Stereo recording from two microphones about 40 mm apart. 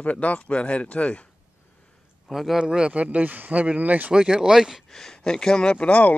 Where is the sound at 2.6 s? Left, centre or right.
Right.